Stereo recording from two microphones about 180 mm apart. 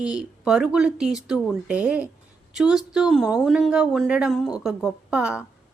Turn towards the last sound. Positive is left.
turn(degrees=-5)  # may be behind; listen again after turning